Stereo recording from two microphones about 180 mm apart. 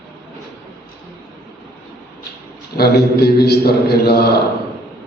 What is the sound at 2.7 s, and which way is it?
A man's voice, 60° left (ahead or behind).